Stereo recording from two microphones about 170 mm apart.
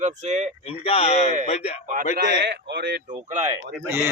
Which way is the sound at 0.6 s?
35° left (ahead or behind).